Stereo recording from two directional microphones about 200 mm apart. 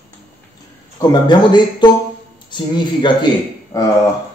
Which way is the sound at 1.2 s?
20° left (ahead or behind).